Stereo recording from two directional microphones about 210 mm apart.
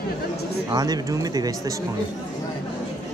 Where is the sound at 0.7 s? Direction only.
20° right (ahead or behind).